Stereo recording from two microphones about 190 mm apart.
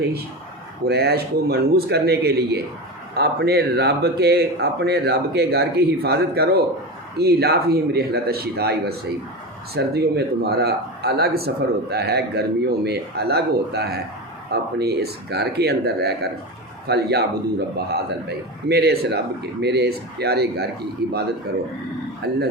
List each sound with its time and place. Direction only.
0.9 s a man's voice: 55° right (ahead or behind)
22.2 s a man's voice: 55° right (ahead or behind)